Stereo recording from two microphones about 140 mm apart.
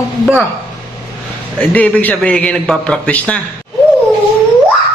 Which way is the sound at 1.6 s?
10° left (ahead or behind).